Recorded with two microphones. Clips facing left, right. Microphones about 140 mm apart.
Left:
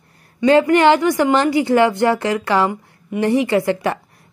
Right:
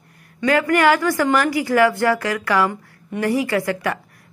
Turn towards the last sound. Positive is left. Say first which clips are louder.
# left 4 dB
turn(degrees=25)  # may be behind; listen again after turning